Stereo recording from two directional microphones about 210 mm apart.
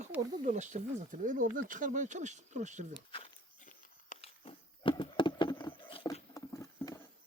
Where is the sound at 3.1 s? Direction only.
25° left (ahead or behind).